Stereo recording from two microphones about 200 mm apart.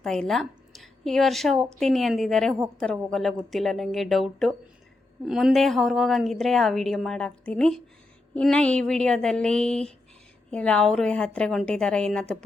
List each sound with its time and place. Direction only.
0.0 s a woman's voice: centre (ahead or behind)